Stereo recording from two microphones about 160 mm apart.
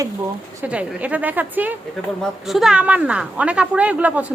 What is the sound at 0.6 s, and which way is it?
A woman's voice, 10° right (ahead or behind).